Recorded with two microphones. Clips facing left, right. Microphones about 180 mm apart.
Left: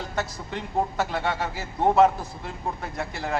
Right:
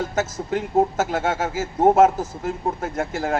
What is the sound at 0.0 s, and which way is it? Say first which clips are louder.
A man's voice: right 6 dB; 45° right (ahead or behind).